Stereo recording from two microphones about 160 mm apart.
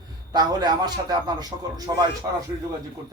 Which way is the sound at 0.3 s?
25° right (ahead or behind).